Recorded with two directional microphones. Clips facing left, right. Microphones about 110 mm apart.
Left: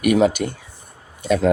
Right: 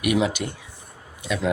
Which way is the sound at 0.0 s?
45° left (ahead or behind).